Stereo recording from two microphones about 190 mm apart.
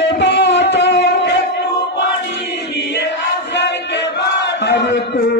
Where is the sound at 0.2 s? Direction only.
65° left (ahead or behind).